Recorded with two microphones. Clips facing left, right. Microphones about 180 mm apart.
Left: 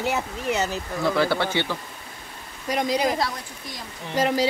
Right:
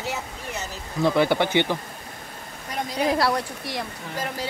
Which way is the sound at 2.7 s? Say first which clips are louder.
Left 4 dB; 90° left.